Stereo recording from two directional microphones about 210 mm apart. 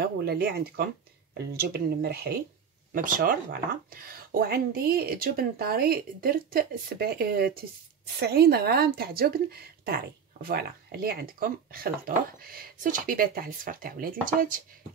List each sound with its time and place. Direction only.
0.0 s speech: 50° right (ahead or behind)